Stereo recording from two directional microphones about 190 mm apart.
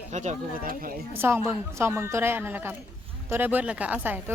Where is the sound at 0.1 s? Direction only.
40° right (ahead or behind).